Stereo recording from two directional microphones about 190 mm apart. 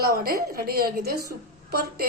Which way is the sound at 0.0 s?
50° right (ahead or behind).